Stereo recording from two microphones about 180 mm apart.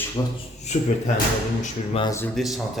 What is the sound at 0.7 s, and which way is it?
Speech, 40° left (ahead or behind).